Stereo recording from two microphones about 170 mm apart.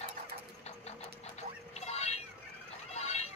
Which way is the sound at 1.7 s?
40° left (ahead or behind).